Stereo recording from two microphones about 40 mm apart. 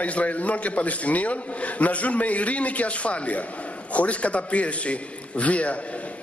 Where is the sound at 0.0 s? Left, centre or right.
Left.